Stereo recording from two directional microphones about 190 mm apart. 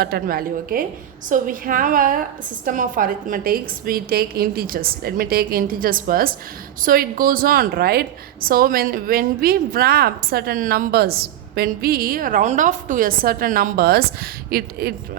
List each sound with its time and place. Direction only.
0.0 s a woman's voice: 50° right (ahead or behind)